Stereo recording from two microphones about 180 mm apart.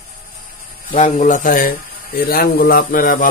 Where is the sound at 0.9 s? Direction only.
45° left (ahead or behind).